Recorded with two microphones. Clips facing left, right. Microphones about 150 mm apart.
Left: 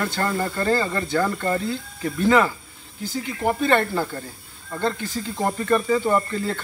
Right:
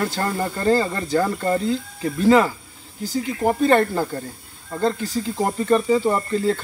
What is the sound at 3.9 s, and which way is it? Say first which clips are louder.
Speech: right 2 dB; 15° right (ahead or behind).